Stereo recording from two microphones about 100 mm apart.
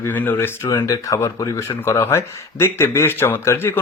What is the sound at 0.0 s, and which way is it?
Speech, 20° left (ahead or behind).